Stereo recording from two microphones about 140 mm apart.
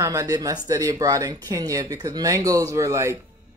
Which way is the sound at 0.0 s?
25° right (ahead or behind).